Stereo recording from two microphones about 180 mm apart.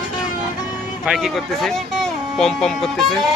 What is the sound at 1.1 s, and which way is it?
Speech, centre (ahead or behind).